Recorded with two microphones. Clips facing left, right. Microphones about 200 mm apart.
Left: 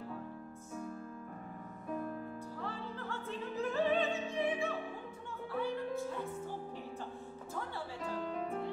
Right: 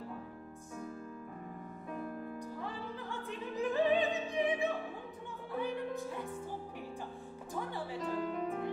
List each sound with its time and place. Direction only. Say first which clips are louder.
2.6 s opera: even; 15° right (ahead or behind)
8.0 s music: right 3 dB; centre (ahead or behind)